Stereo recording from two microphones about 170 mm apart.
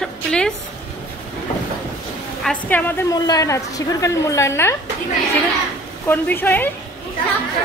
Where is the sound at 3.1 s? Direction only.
25° left (ahead or behind).